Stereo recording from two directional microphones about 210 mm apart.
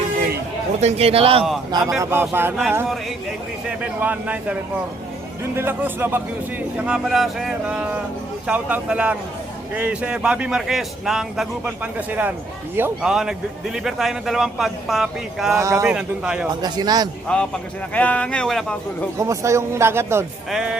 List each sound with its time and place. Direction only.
0.8 s a man's voice: 30° right (ahead or behind)
2.0 s a man's voice: 10° right (ahead or behind)
5.5 s a man's voice: 10° right (ahead or behind)
15.5 s a man's voice: 15° right (ahead or behind)
16.0 s a man's voice: 5° right (ahead or behind)
16.6 s a man's voice: 20° right (ahead or behind)
17.2 s a man's voice: 5° left (ahead or behind)
19.2 s a man's voice: 15° right (ahead or behind)